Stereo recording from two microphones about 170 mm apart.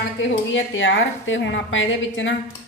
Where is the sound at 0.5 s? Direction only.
90° left.